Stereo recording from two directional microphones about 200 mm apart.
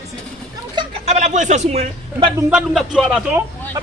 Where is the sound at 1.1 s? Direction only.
35° right (ahead or behind).